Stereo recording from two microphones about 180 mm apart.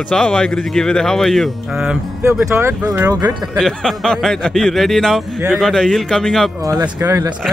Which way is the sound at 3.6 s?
Centre (ahead or behind).